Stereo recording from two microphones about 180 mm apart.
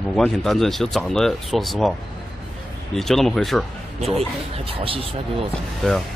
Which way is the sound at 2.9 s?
Centre (ahead or behind).